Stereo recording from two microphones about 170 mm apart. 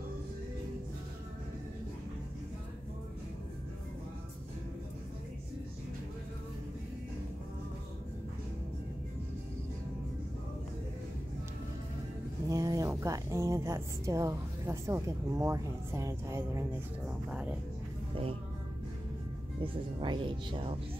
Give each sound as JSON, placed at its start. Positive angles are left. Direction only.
{"t": 12.4, "sound": "a woman's voice", "side_deg": -20}
{"t": 19.6, "sound": "speech", "side_deg": -30}